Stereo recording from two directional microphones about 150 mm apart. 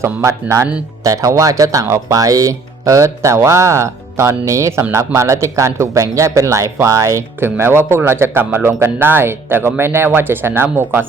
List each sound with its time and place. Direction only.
0.0 s speech: 20° right (ahead or behind)